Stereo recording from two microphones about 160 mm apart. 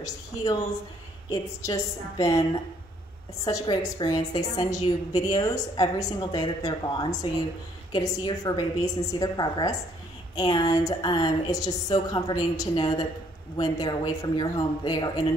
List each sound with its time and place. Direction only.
0.0 s a woman's voice: 20° left (ahead or behind)
3.4 s a woman's voice: 20° left (ahead or behind)